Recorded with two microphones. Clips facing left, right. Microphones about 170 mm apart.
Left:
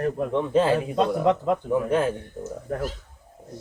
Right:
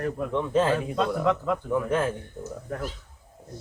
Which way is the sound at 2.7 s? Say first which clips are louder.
Left 5 dB; 40° left (ahead or behind).